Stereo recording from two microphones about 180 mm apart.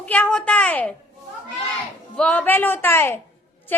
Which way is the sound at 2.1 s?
5° left (ahead or behind).